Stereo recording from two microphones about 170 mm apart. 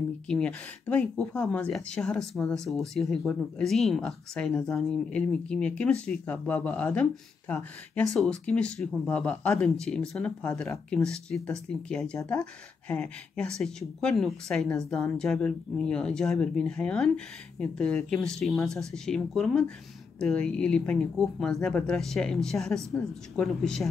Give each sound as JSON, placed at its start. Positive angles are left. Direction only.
{"t": 0.3, "sound": "speech", "side_deg": 5}
{"t": 12.2, "sound": "speech", "side_deg": 20}
{"t": 12.8, "sound": "speech", "side_deg": 10}